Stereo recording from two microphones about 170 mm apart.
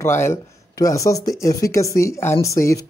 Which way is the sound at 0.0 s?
15° left (ahead or behind).